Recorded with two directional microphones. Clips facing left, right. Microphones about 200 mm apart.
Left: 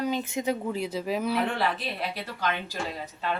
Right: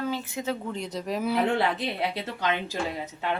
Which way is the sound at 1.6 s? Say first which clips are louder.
Right 3 dB; 20° right (ahead or behind).